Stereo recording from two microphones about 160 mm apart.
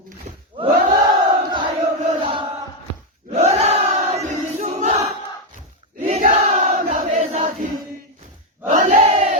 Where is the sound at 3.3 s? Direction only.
45° right (ahead or behind).